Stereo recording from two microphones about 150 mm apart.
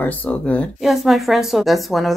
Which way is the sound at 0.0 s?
10° left (ahead or behind).